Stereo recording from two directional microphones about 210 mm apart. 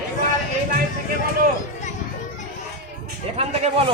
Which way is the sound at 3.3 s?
30° right (ahead or behind).